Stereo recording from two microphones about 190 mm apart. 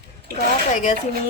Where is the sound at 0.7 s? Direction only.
40° left (ahead or behind).